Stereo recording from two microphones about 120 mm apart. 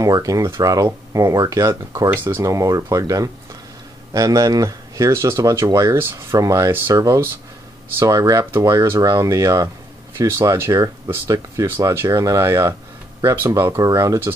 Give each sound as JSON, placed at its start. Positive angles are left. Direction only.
{"t": 0.0, "sound": "speech", "side_deg": -30}
{"t": 2.0, "sound": "speech", "side_deg": -15}